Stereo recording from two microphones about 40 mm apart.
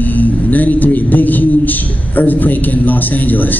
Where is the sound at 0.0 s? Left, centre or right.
Left.